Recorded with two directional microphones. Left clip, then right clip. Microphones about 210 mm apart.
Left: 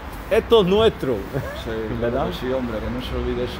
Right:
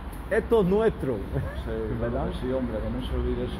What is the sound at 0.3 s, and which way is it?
Speech, 20° left (ahead or behind).